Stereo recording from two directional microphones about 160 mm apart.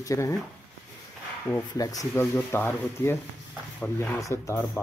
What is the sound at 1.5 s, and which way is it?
Speech, 15° left (ahead or behind).